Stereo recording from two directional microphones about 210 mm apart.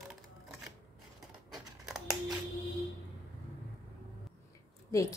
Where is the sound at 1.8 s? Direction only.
Centre (ahead or behind).